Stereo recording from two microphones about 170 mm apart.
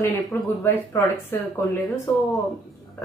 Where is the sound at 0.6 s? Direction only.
15° left (ahead or behind).